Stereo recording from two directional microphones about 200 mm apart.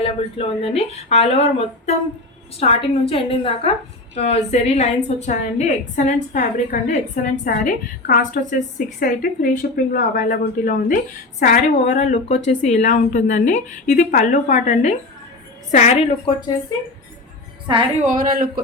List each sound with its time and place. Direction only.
0.0 s a woman's voice: 30° left (ahead or behind)
18.0 s a man's voice: 40° right (ahead or behind)